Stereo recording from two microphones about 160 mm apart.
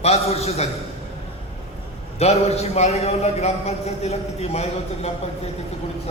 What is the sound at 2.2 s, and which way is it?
A man's voice, 40° left (ahead or behind).